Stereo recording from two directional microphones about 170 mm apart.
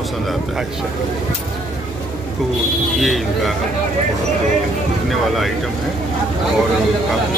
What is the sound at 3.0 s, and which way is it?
Speech, centre (ahead or behind).